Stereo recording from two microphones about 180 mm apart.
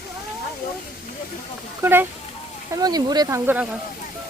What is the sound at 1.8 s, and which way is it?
Speech, 10° right (ahead or behind).